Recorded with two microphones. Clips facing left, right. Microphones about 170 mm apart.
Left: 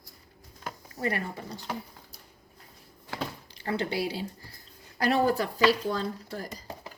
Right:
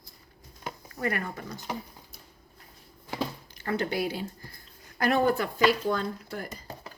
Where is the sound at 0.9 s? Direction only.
30° left (ahead or behind).